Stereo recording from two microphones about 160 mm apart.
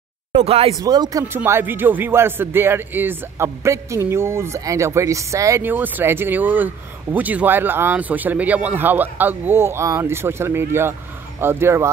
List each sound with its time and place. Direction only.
0.5 s speech: 40° right (ahead or behind)
0.7 s speech: 25° right (ahead or behind)
1.2 s speech: 15° right (ahead or behind)